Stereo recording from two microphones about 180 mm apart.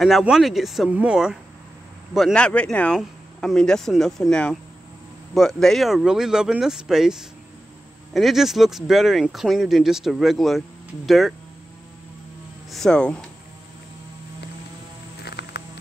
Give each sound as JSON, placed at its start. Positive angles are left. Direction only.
{"t": 0.0, "sound": "speech", "side_deg": 0}
{"t": 12.7, "sound": "speech", "side_deg": 5}
{"t": 15.2, "sound": "music", "side_deg": 65}